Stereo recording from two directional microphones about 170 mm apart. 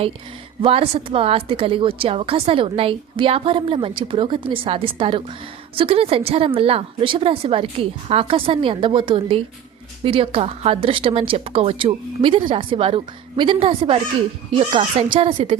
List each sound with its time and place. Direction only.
0.6 s a woman's voice: 35° right (ahead or behind)